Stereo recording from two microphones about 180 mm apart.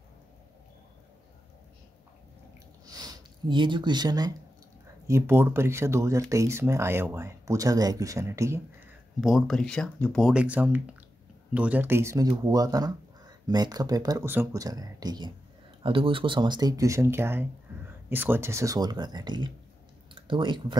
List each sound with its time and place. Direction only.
2.9 s speech: 20° right (ahead or behind)
9.2 s speech: centre (ahead or behind)
17.7 s a sound: 15° right (ahead or behind)
18.1 s speech: 10° right (ahead or behind)